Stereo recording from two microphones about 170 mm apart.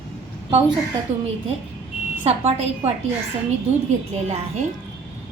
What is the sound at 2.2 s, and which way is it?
Speech, 35° right (ahead or behind).